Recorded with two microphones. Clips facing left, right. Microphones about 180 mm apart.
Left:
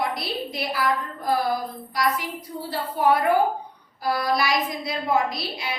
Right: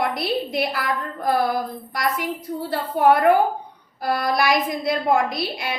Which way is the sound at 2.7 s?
55° right (ahead or behind).